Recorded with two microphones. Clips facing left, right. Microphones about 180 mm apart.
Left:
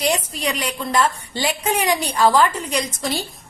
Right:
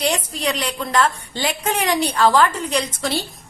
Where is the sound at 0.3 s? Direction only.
10° left (ahead or behind).